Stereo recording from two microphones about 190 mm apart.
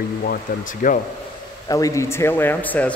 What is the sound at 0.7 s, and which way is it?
Speech, 45° left (ahead or behind).